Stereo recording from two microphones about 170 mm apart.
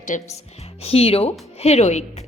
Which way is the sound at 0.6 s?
35° left (ahead or behind).